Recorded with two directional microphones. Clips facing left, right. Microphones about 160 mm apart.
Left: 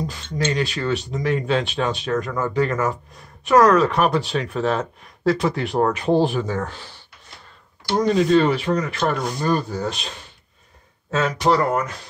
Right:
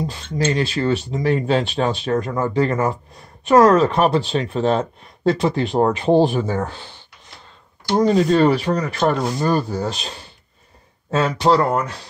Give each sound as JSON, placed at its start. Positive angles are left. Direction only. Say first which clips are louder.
{"t": 0.0, "sound": "speech", "louder": "right 3 dB", "side_deg": -30}
{"t": 7.9, "sound": "speech", "louder": "right 1 dB", "side_deg": -35}